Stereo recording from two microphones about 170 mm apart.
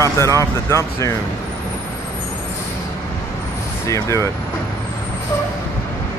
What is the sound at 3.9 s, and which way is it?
Speech, 15° left (ahead or behind).